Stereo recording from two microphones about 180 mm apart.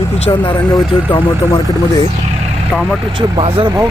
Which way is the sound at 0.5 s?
25° left (ahead or behind).